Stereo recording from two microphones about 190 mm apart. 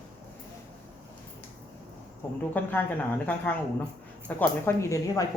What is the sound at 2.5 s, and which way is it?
Speech, 10° left (ahead or behind).